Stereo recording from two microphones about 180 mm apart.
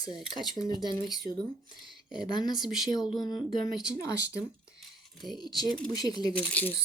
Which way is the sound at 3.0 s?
20° left (ahead or behind).